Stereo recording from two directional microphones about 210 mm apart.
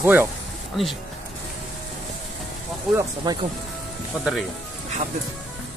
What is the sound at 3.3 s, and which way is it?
Speech, 20° right (ahead or behind).